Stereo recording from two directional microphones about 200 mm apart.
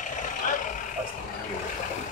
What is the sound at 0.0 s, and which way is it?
Vehicle, 40° left (ahead or behind).